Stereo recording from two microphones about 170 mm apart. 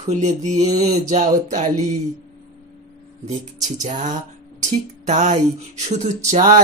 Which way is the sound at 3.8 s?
45° right (ahead or behind).